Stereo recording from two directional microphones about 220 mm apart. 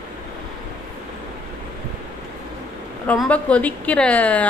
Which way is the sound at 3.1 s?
5° left (ahead or behind).